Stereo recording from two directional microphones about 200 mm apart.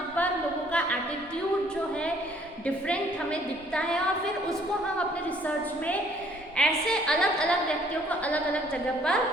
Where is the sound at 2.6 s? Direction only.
5° left (ahead or behind).